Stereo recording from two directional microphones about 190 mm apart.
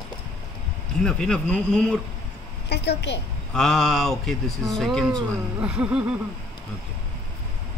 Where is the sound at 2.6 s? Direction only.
60° left (ahead or behind).